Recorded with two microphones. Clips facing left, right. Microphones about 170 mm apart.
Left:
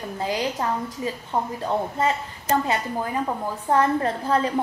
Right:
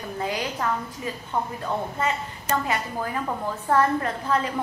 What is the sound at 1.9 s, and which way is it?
Speech, 30° left (ahead or behind).